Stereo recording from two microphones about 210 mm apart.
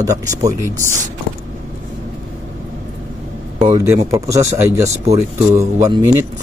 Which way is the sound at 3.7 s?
15° right (ahead or behind).